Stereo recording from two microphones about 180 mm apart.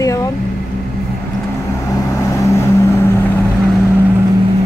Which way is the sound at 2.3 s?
15° left (ahead or behind).